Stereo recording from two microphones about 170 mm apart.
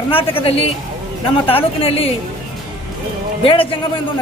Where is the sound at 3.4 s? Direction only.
30° left (ahead or behind).